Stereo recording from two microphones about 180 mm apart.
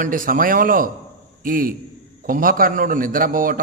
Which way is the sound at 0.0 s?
50° right (ahead or behind).